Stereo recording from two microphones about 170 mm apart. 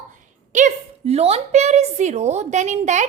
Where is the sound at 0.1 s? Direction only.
45° right (ahead or behind).